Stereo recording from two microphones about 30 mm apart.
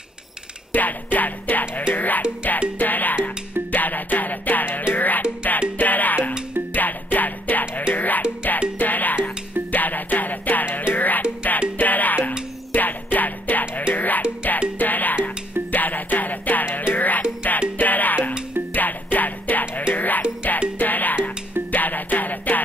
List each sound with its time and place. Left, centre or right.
0.7 s music: left